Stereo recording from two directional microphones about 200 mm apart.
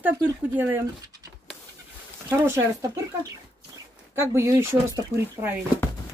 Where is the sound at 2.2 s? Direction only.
10° right (ahead or behind).